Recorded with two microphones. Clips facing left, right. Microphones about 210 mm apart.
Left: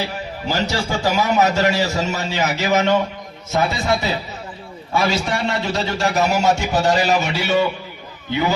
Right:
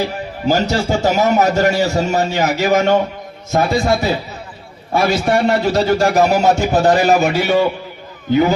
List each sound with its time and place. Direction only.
0.0 s a man's voice: 50° right (ahead or behind)